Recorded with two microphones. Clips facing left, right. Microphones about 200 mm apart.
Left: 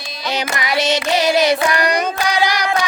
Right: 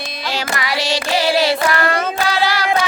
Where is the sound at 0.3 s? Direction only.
20° left (ahead or behind).